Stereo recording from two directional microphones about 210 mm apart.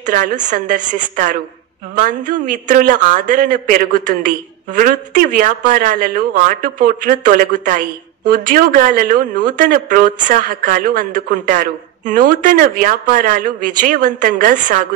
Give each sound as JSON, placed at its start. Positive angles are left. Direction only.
{"t": 0.0, "sound": "speech", "side_deg": -40}